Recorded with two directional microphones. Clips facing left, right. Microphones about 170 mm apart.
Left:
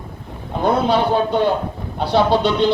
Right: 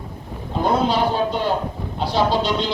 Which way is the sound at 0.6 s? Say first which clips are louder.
Left 2 dB; 60° left (ahead or behind).